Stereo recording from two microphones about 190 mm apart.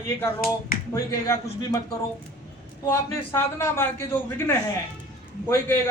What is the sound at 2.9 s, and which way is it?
Speech, 15° left (ahead or behind).